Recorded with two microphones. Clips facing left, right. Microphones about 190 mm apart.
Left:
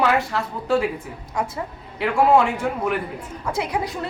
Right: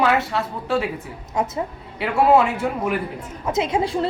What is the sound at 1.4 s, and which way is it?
Speech, 20° right (ahead or behind).